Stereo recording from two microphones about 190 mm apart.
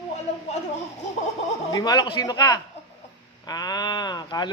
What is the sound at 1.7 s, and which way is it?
Speech, 20° left (ahead or behind).